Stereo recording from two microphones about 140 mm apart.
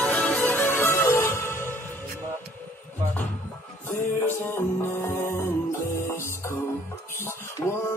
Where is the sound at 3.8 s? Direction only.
15° left (ahead or behind).